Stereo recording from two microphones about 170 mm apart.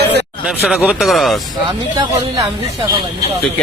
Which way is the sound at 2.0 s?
20° right (ahead or behind).